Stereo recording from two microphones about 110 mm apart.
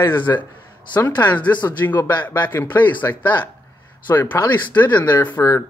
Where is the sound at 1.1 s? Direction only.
40° left (ahead or behind).